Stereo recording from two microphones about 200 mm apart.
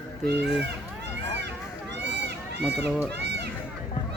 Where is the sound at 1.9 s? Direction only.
60° right (ahead or behind).